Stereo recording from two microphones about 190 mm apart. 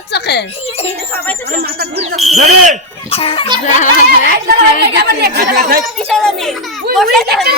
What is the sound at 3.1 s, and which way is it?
Speech, 30° left (ahead or behind).